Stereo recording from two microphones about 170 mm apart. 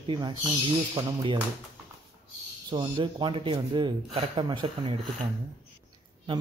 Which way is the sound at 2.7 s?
30° right (ahead or behind).